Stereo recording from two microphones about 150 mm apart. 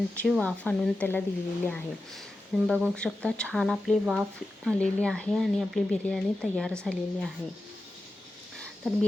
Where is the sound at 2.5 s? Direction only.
5° right (ahead or behind).